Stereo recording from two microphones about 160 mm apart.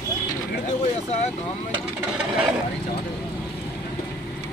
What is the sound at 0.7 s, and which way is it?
Speech, 45° left (ahead or behind).